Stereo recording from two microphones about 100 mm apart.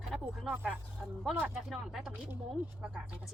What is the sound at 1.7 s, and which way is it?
Speech, 5° right (ahead or behind).